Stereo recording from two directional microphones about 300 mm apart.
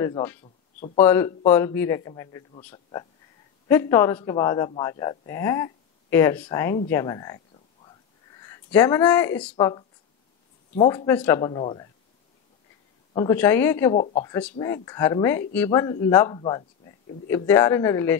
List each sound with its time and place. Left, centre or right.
0.0 s a man's voice: centre
0.4 s speech: left
0.9 s a man's voice: centre
6.9 s a sound: centre
8.4 s a man's voice: centre
13.1 s a man's voice: centre